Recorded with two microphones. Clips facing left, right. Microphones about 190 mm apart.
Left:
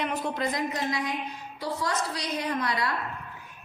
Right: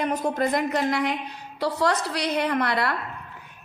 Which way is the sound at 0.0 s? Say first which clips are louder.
Right 5 dB; 45° right (ahead or behind).